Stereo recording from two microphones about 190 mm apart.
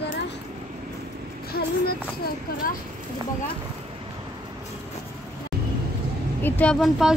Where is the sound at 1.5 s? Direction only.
55° left (ahead or behind).